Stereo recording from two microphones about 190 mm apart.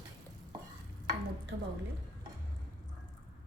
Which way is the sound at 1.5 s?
55° right (ahead or behind).